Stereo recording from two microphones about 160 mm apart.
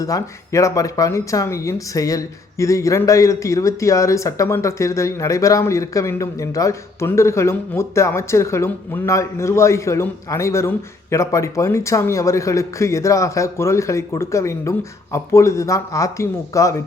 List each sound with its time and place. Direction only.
0.0 s speech: 20° left (ahead or behind)